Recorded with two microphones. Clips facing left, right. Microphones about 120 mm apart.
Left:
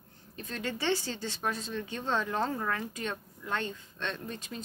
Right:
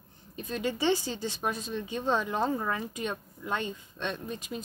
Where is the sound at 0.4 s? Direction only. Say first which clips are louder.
Right 5 dB; 15° right (ahead or behind).